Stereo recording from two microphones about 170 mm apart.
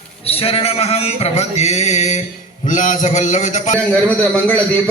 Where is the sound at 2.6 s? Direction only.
50° left (ahead or behind).